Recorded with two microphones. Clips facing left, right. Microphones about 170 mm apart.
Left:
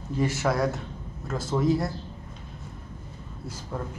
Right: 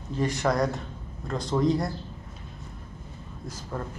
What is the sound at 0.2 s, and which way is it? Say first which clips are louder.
A man's voice: even; 5° left (ahead or behind).